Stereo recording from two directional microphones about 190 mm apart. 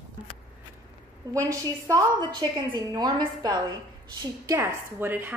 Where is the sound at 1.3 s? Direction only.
15° right (ahead or behind).